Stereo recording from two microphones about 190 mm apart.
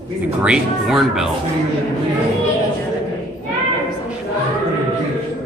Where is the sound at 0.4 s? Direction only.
5° right (ahead or behind).